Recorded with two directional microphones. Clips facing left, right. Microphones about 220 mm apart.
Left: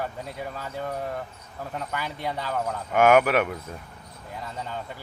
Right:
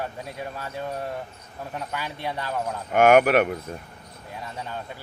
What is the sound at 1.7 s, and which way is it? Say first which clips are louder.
Speech: even; 10° right (ahead or behind).